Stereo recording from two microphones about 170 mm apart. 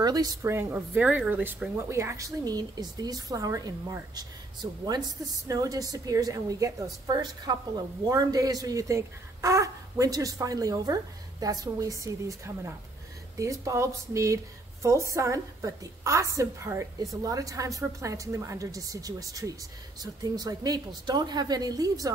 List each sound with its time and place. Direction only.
0.0 s a woman's voice: 20° right (ahead or behind)